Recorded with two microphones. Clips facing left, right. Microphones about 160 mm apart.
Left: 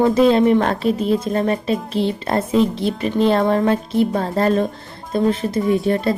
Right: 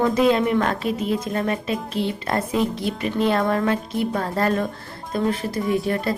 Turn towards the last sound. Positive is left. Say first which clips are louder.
# left 5 dB
turn(degrees=25)  # may be behind; listen again after turning